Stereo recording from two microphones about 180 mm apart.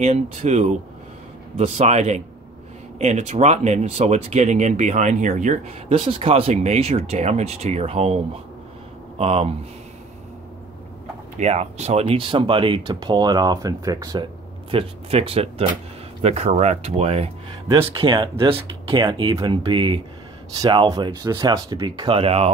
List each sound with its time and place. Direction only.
0.0 s speech: 40° right (ahead or behind)
9.2 s speech: 35° right (ahead or behind)
11.3 s speech: 35° right (ahead or behind); by 14.2 s 20° right (ahead or behind)
14.7 s speech: 30° right (ahead or behind)